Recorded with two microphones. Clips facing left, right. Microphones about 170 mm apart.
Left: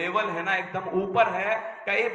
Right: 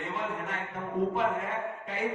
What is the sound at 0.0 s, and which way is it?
A man's voice, 80° left.